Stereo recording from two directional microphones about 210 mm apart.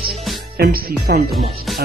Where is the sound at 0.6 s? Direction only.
45° right (ahead or behind).